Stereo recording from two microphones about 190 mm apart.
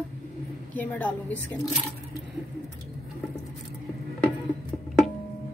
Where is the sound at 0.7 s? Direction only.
10° left (ahead or behind).